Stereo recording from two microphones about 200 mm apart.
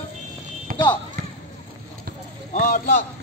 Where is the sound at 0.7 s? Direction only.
45° right (ahead or behind).